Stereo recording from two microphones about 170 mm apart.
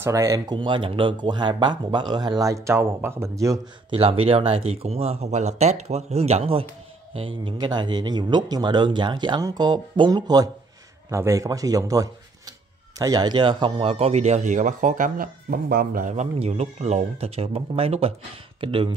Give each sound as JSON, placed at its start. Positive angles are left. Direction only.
{"t": 0.0, "sound": "speech", "side_deg": -20}
{"t": 3.9, "sound": "a man's voice", "side_deg": -30}